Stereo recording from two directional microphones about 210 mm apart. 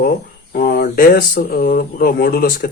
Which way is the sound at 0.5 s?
45° left (ahead or behind).